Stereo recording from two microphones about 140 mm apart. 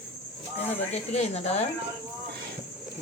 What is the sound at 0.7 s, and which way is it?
Speech, 50° left (ahead or behind).